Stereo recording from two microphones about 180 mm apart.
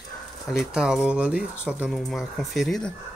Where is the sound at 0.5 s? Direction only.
5° right (ahead or behind).